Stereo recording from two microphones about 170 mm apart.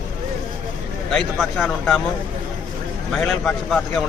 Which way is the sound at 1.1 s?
Centre (ahead or behind).